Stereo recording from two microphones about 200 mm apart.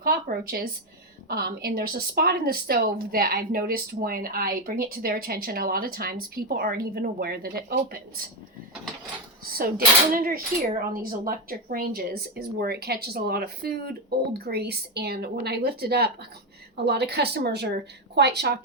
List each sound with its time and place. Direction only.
0.0 s a woman's voice: 45° right (ahead or behind)
9.4 s a woman's voice: 50° right (ahead or behind)